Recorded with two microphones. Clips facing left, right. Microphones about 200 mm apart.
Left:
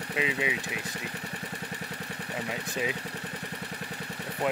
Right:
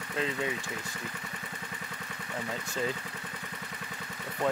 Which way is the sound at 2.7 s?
15° left (ahead or behind).